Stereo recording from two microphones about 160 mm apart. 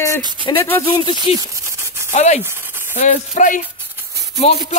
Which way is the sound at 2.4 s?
15° right (ahead or behind).